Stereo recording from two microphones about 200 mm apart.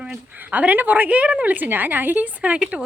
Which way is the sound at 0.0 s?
5° right (ahead or behind).